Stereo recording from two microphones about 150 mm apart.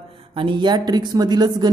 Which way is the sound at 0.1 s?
35° right (ahead or behind).